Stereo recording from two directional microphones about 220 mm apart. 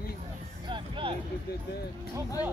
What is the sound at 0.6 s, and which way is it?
Music, 20° right (ahead or behind).